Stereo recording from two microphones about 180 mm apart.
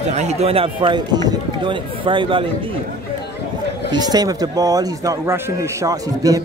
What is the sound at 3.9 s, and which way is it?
Speech, 20° right (ahead or behind).